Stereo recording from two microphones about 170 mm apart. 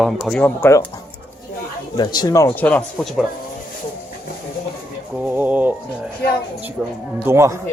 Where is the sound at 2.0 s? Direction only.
25° left (ahead or behind).